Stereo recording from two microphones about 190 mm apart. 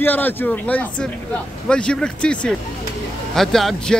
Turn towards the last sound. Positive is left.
turn(degrees=0)  # may be behind; listen again after turning